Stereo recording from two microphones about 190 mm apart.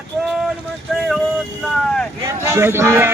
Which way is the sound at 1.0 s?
Centre (ahead or behind).